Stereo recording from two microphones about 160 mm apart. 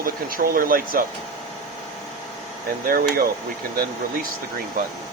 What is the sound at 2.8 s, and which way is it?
Speech, 60° right (ahead or behind).